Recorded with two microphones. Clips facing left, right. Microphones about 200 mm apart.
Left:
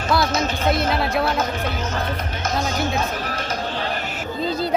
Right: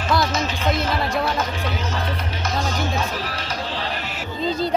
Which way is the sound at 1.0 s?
5° left (ahead or behind).